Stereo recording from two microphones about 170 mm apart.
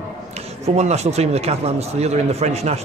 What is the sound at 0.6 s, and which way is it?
Speech, 40° right (ahead or behind).